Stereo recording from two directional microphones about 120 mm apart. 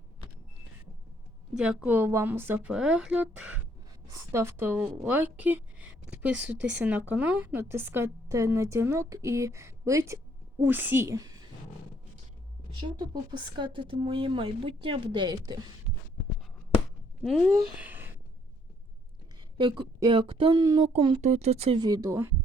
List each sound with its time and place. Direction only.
1.5 s speech: 10° right (ahead or behind)
4.3 s a woman's voice: 25° right (ahead or behind)
13.6 s speech: 45° right (ahead or behind)
17.7 s a sound: 15° right (ahead or behind)
19.5 s a woman's voice: 45° right (ahead or behind)
20.6 s speech: 35° right (ahead or behind)
20.9 s speech: 45° right (ahead or behind)
21.2 s speech: 70° right (ahead or behind)
21.8 s speech: 30° right (ahead or behind)